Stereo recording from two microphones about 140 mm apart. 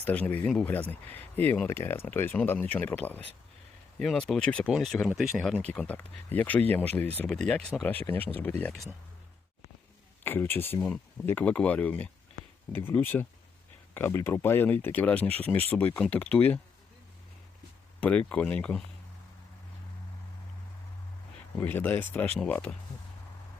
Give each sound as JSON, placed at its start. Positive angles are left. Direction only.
{"t": 0.0, "sound": "speech", "side_deg": 10}
{"t": 10.2, "sound": "speech", "side_deg": 15}
{"t": 18.0, "sound": "speech", "side_deg": 10}
{"t": 21.6, "sound": "speech", "side_deg": 15}